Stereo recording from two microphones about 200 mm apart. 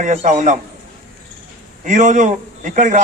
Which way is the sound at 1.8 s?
40° right (ahead or behind).